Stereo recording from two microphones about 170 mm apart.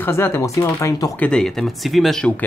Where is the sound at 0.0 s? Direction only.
15° left (ahead or behind).